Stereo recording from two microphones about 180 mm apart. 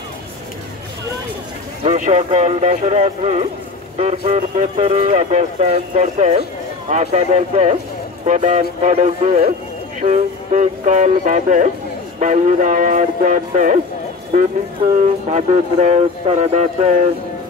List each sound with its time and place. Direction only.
1.8 s speech: 35° right (ahead or behind)
15.2 s speech: 40° right (ahead or behind)